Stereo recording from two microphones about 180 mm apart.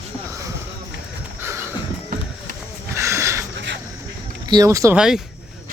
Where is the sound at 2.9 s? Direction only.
15° right (ahead or behind).